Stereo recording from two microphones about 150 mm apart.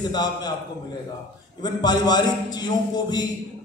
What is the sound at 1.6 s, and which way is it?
A man's voice, 30° left (ahead or behind).